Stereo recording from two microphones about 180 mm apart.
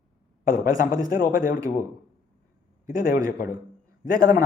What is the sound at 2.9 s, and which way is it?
A man's voice, 50° left (ahead or behind).